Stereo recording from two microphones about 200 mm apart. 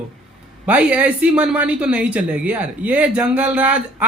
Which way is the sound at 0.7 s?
5° right (ahead or behind).